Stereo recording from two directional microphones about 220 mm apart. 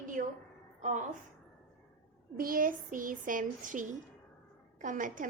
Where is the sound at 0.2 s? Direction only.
40° right (ahead or behind).